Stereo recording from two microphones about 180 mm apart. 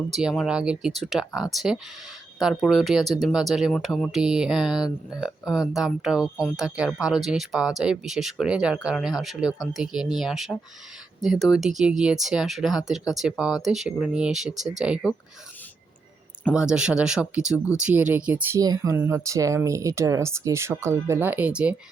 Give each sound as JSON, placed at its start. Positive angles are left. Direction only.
{"t": 0.1, "sound": "speech", "side_deg": 0}
{"t": 16.6, "sound": "speech", "side_deg": -5}
{"t": 18.6, "sound": "speech", "side_deg": -20}